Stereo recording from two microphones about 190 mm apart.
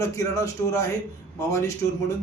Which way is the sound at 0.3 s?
15° left (ahead or behind).